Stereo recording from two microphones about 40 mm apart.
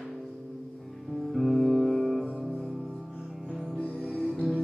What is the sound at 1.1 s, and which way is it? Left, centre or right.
Music, centre.